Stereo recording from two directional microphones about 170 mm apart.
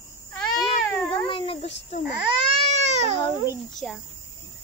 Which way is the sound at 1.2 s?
30° left (ahead or behind).